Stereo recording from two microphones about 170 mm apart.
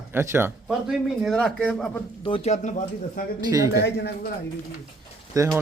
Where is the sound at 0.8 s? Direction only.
Centre (ahead or behind).